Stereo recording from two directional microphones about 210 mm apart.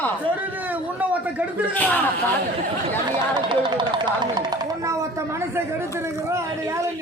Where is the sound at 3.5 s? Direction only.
20° right (ahead or behind).